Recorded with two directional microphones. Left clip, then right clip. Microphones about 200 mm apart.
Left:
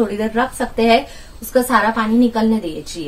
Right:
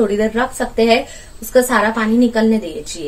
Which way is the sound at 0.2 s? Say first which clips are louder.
Right 2 dB; 35° right (ahead or behind).